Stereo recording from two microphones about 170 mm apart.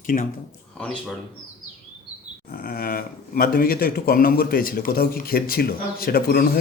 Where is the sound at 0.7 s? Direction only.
5° left (ahead or behind).